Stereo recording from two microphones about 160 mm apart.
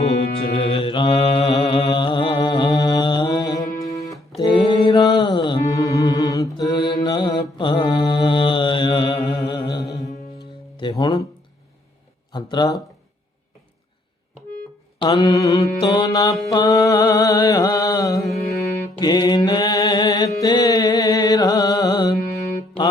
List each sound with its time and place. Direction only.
0.5 s mantra: 35° left (ahead or behind)
3.8 s music: 20° left (ahead or behind)
4.4 s mantra: 30° left (ahead or behind)
10.8 s music: 30° left (ahead or behind)
12.3 s a sound: 25° left (ahead or behind)
15.0 s mantra: 25° left (ahead or behind)